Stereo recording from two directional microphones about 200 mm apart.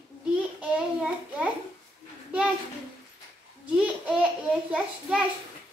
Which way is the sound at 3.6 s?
5° right (ahead or behind).